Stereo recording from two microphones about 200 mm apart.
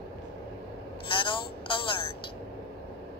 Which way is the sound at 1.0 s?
25° left (ahead or behind).